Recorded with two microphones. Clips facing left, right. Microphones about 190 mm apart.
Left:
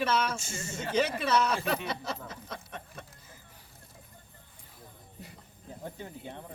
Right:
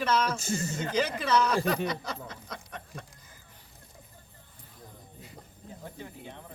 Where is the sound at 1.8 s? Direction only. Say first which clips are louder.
Right 2 dB; 25° left (ahead or behind).